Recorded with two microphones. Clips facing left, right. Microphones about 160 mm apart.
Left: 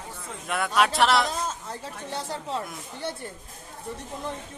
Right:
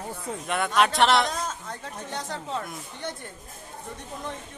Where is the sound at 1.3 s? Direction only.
30° left (ahead or behind).